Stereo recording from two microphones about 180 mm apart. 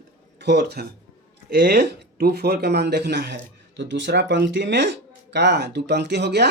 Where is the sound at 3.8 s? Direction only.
80° right.